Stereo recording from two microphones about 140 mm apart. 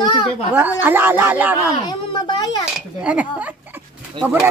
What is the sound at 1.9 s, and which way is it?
Speech, 35° left (ahead or behind).